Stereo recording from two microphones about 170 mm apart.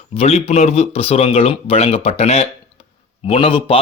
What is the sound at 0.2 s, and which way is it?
Speech, 40° left (ahead or behind).